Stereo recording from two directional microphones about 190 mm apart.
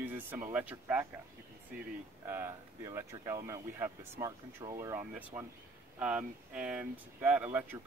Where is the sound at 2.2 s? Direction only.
15° right (ahead or behind).